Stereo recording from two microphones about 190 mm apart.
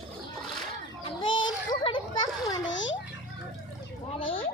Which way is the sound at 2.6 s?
75° left (ahead or behind).